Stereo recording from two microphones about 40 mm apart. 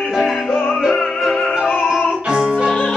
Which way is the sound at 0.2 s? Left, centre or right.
Centre.